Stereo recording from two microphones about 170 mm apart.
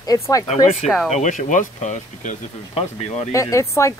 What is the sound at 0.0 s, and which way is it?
Speech, 20° left (ahead or behind).